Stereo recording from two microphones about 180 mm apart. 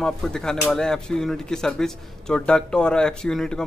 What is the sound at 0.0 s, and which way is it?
Speech, 5° left (ahead or behind).